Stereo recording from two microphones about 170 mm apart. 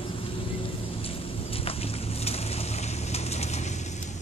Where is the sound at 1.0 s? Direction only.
35° left (ahead or behind).